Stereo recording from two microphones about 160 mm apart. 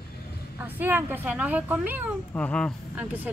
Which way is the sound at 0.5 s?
10° right (ahead or behind).